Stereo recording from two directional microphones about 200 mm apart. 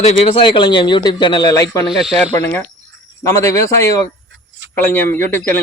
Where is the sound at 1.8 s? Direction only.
Centre (ahead or behind).